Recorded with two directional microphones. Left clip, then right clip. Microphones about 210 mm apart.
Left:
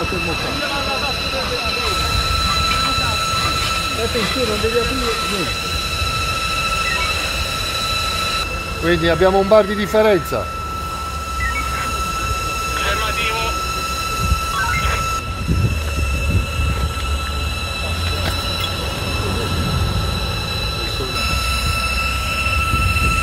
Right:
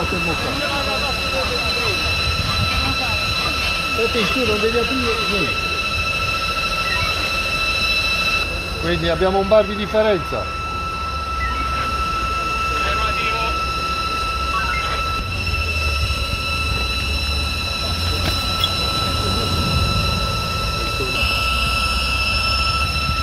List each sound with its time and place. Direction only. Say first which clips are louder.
8.8 s speech: left 4 dB; 50° left (ahead or behind)
12.8 s vehicle: even; 50° left (ahead or behind)